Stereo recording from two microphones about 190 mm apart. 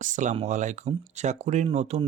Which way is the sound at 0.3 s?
40° right (ahead or behind).